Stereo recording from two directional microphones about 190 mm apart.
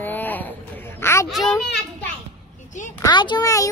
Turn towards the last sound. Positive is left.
turn(degrees=20)  # may be behind; listen again after turning